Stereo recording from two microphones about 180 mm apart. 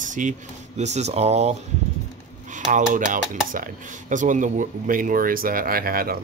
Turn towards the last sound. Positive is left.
turn(degrees=-55)  # may be behind; listen again after turning